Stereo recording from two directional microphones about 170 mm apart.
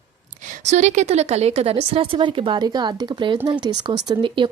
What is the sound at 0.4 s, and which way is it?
Speech, 40° right (ahead or behind).